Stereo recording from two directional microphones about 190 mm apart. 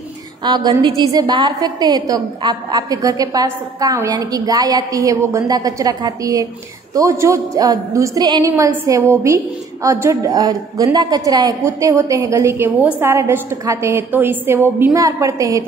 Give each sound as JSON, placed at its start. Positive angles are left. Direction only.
{"t": 0.4, "sound": "a woman's voice", "side_deg": -25}